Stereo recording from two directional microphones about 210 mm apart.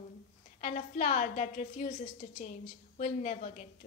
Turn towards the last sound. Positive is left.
turn(degrees=35)  # may be behind; listen again after turning